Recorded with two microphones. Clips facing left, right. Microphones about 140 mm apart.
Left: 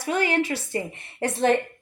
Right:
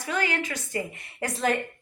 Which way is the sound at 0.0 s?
25° left (ahead or behind).